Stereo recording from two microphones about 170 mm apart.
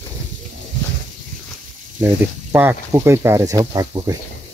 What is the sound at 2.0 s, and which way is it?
Speech, 10° right (ahead or behind).